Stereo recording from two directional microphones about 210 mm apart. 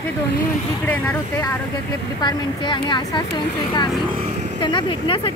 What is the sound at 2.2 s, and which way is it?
A woman's voice, 20° left (ahead or behind).